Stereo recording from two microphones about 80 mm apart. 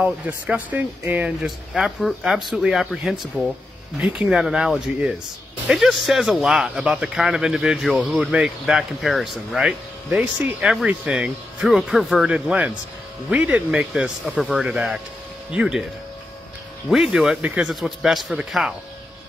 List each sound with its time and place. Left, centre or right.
0.0 s speech: centre
1.4 s speech: centre
12.3 s speech: centre
16.9 s speech: centre
17.4 s speech: centre
17.6 s speech: centre